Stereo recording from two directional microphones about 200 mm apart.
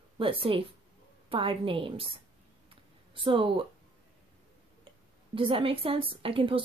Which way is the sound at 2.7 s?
25° right (ahead or behind).